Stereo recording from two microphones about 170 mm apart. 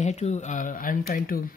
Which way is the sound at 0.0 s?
40° left (ahead or behind).